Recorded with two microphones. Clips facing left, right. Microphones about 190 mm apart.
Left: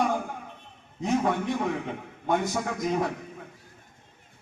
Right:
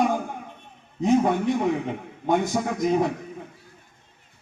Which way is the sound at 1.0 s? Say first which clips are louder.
Right 5 dB; 20° right (ahead or behind).